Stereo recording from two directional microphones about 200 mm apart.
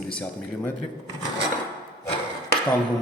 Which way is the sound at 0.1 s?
5° left (ahead or behind).